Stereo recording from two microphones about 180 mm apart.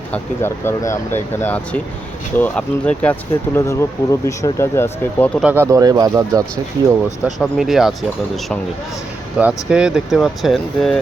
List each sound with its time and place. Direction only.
0.1 s speech: 15° left (ahead or behind)
5.4 s speech: 10° right (ahead or behind)
7.3 s speech: centre (ahead or behind)
9.4 s speech: 5° right (ahead or behind)